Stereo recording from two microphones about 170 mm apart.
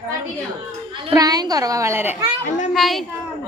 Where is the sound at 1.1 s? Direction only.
20° right (ahead or behind).